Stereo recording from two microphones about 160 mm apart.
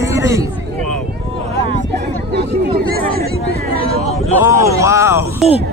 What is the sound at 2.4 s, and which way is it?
Speech, 75° right (ahead or behind).